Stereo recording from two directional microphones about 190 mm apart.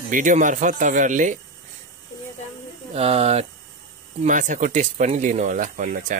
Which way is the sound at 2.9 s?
30° right (ahead or behind).